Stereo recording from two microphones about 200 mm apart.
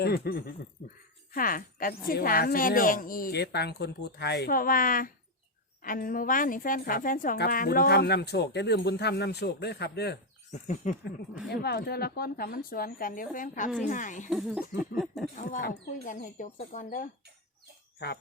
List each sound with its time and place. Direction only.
0.0 s a woman's voice: 50° left (ahead or behind)
10.5 s speech: 35° left (ahead or behind)
11.4 s a woman's voice: 55° left (ahead or behind); by 14.3 s 40° left (ahead or behind)
14.3 s speech: 5° right (ahead or behind)
15.4 s speech: 40° left (ahead or behind)
18.0 s speech: 55° left (ahead or behind)